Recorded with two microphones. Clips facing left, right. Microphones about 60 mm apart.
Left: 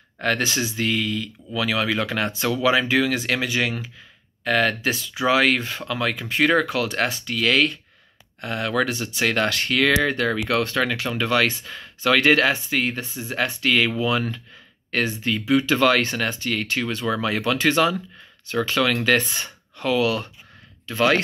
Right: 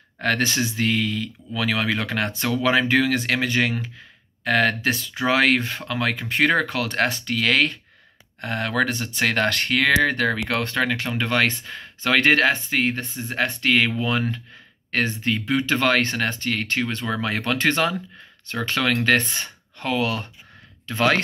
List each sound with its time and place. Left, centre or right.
0.2 s speech: right